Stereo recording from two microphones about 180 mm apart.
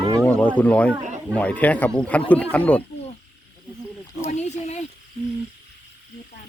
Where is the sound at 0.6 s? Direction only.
5° left (ahead or behind).